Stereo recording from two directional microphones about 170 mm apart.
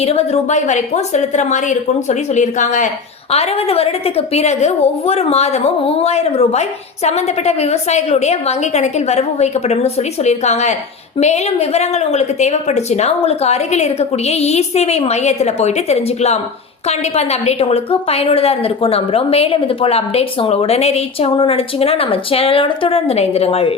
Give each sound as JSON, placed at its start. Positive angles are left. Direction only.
{"t": 0.0, "sound": "a woman's voice", "side_deg": 35}
{"t": 3.3, "sound": "a woman's voice", "side_deg": 35}